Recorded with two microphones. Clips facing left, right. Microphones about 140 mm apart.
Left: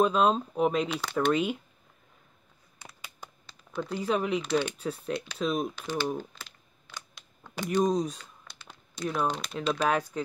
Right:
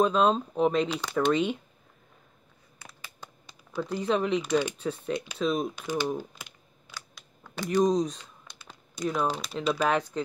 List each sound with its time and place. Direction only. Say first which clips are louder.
0.0 s speech: right 1 dB; 5° left (ahead or behind)
3.7 s speech: right 2 dB; 5° right (ahead or behind)
4.0 s speech: right 2 dB; 5° left (ahead or behind)
4.4 s speech: right 2 dB; 15° right (ahead or behind)
4.7 s speech: right 2 dB; centre (ahead or behind)
5.8 s speech: right 1 dB; 15° right (ahead or behind)
6.9 s a sound: even; 15° left (ahead or behind)
7.7 s speech: right 2 dB; 5° left (ahead or behind)
8.9 s speech: right 1 dB; 10° right (ahead or behind); by 10.2 s 5° left (ahead or behind)